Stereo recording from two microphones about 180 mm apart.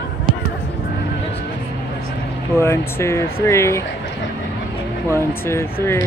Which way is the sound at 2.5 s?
15° left (ahead or behind).